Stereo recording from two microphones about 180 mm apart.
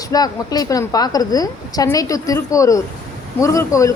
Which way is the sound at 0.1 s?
20° left (ahead or behind).